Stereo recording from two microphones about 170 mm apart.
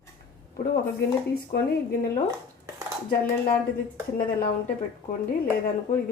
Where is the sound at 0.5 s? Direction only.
65° left (ahead or behind).